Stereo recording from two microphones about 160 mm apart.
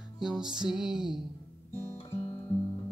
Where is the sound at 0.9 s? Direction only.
5° right (ahead or behind).